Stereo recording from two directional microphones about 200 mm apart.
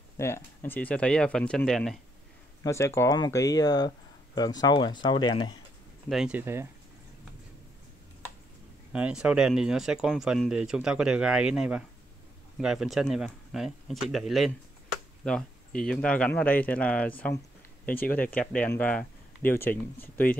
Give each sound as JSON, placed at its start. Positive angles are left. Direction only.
{"t": 0.2, "sound": "speech", "side_deg": 10}
{"t": 2.6, "sound": "speech", "side_deg": 15}
{"t": 6.0, "sound": "speech", "side_deg": -5}
{"t": 8.9, "sound": "speech", "side_deg": -5}